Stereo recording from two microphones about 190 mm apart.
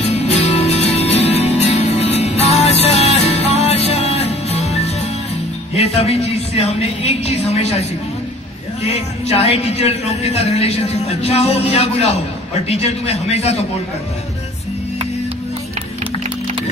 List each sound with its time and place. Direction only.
0.0 s music: 35° left (ahead or behind)
5.8 s a woman's voice: 35° left (ahead or behind)
8.8 s music: 35° left (ahead or behind)